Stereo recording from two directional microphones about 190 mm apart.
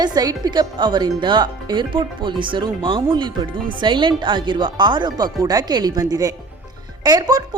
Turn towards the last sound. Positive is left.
turn(degrees=-20)  # may be behind; listen again after turning